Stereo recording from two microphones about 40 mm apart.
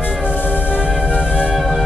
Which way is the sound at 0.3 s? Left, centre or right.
Left.